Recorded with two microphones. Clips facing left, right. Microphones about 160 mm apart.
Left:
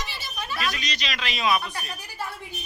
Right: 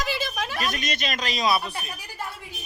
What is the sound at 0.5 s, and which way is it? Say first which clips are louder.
Speech: left 1 dB; 45° right (ahead or behind).